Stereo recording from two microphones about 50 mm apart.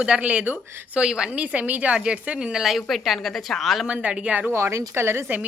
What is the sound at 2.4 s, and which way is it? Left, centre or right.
A woman's voice, centre.